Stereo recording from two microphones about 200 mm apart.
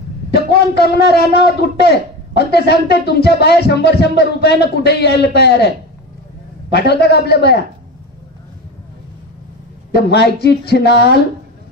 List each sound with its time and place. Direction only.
0.3 s a man's voice: 55° left (ahead or behind)
6.7 s a man's voice: 55° left (ahead or behind)
9.9 s a man's voice: 55° left (ahead or behind)